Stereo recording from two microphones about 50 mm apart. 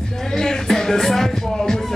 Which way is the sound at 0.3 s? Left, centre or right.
Centre.